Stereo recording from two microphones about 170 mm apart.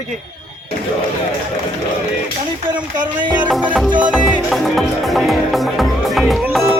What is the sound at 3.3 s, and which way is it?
Music, 10° right (ahead or behind).